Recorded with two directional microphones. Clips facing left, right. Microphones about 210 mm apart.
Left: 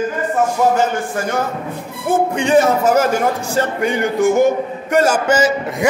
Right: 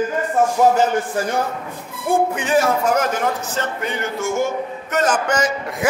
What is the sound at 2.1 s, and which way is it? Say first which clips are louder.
A man's voice: left 3 dB; 5° right (ahead or behind).